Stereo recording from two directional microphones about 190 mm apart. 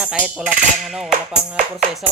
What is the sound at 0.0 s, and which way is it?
Speech, 5° right (ahead or behind).